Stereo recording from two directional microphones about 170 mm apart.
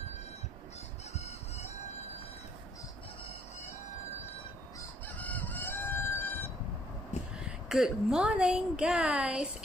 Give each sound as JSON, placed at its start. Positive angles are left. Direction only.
{"t": 1.1, "sound": "chicken", "side_deg": 40}
{"t": 4.3, "sound": "fowl", "side_deg": 10}
{"t": 7.3, "sound": "a woman's voice", "side_deg": -5}